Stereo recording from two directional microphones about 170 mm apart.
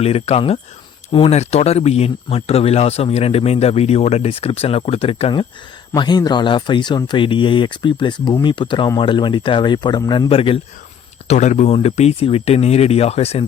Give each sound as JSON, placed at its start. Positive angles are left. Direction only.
{"t": 0.0, "sound": "speech", "side_deg": 35}
{"t": 11.3, "sound": "speech", "side_deg": 45}